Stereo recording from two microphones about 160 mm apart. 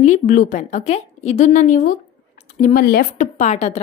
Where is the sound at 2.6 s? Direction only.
65° left (ahead or behind).